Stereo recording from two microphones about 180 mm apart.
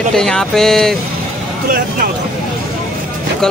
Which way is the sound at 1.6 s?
55° right (ahead or behind).